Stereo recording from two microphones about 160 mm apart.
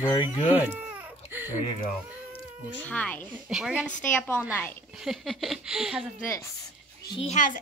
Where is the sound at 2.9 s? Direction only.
10° left (ahead or behind).